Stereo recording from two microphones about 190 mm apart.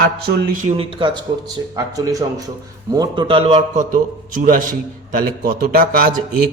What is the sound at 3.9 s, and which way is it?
A man's voice, 45° right (ahead or behind).